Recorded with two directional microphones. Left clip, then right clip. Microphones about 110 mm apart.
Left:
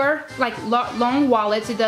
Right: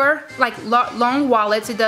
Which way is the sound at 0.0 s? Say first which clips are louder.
Right 3 dB; 40° right (ahead or behind).